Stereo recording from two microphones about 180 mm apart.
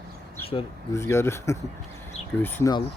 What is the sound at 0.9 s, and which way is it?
Speech, 15° left (ahead or behind).